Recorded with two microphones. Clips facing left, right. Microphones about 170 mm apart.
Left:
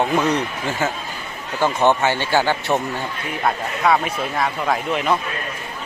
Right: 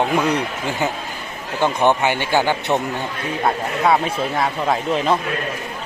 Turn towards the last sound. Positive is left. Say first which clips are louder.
# right 2 dB
turn(degrees=-30)  # may be behind; listen again after turning